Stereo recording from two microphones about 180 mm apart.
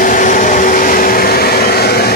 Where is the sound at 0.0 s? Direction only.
45° left (ahead or behind).